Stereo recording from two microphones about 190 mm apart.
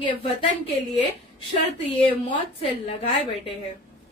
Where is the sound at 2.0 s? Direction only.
30° left (ahead or behind).